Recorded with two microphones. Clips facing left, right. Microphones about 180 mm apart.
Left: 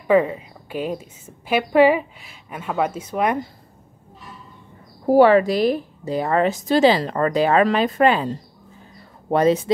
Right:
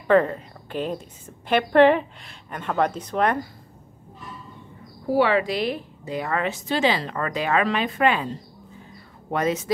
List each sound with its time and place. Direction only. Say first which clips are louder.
0.0 s a woman's voice: left 1 dB; 10° left (ahead or behind)
5.0 s a woman's voice: left 7 dB; 45° left (ahead or behind)